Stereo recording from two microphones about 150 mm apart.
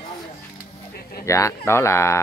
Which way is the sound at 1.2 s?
20° left (ahead or behind).